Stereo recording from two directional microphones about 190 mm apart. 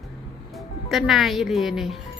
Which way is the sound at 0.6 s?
Centre (ahead or behind).